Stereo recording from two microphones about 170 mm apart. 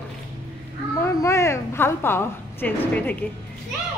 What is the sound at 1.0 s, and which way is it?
A woman's voice, 15° left (ahead or behind).